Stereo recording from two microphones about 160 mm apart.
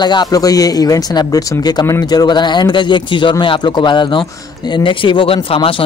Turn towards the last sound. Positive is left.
turn(degrees=35)  # may be behind; listen again after turning